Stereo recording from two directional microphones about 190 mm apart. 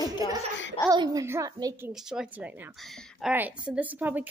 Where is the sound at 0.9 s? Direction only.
20° right (ahead or behind).